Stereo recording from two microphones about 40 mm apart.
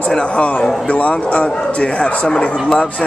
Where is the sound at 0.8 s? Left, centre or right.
Left.